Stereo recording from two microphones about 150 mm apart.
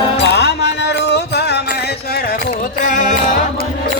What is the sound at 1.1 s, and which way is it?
Music, 90° left.